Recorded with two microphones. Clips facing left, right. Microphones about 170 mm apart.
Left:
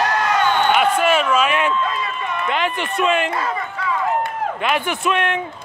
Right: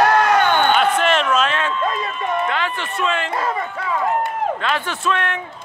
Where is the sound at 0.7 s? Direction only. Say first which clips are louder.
Even; 10° left (ahead or behind).